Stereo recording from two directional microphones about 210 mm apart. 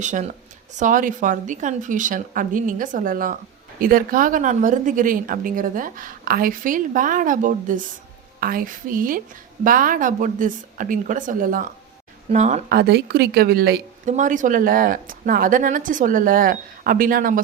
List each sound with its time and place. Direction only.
0.0 s speech: 35° right (ahead or behind)
12.6 s a woman's voice: 50° right (ahead or behind)
14.0 s speech: 35° right (ahead or behind)